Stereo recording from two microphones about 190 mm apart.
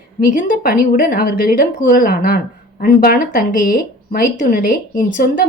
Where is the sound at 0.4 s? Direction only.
45° left (ahead or behind).